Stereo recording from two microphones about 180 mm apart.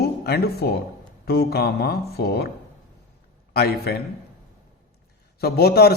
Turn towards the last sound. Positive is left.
turn(degrees=60)  # may be behind; listen again after turning